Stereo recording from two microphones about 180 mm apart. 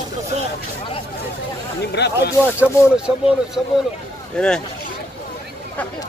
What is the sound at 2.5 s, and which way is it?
Speech, 5° right (ahead or behind).